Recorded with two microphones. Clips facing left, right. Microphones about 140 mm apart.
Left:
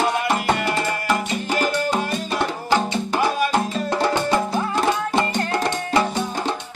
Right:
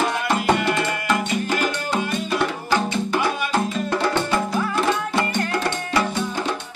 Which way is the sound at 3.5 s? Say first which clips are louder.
Left 1 dB; 20° left (ahead or behind).